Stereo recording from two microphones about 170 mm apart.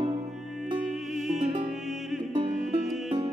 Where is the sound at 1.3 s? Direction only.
40° right (ahead or behind).